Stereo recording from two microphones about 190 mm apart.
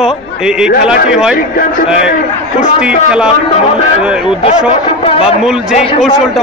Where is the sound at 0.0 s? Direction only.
5° right (ahead or behind).